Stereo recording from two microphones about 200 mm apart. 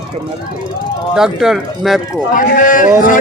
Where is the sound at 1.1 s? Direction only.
Centre (ahead or behind).